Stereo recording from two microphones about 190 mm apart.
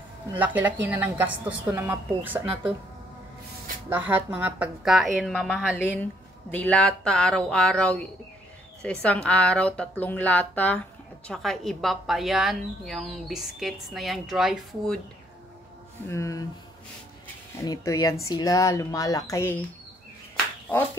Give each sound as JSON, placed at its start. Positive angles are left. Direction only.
{"t": 0.3, "sound": "speech", "side_deg": -10}
{"t": 3.9, "sound": "speech", "side_deg": -10}
{"t": 16.1, "sound": "speech", "side_deg": 15}
{"t": 17.6, "sound": "speech", "side_deg": 20}